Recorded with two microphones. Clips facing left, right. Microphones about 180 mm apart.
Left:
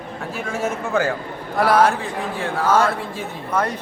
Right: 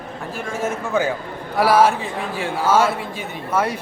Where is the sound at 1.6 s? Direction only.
5° right (ahead or behind).